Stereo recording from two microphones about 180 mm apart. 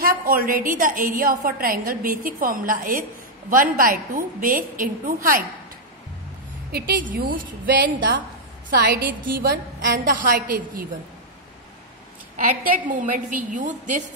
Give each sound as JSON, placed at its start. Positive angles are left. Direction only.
{"t": 0.0, "sound": "a woman's voice", "side_deg": -55}
{"t": 6.7, "sound": "a woman's voice", "side_deg": -50}
{"t": 12.6, "sound": "a woman's voice", "side_deg": -50}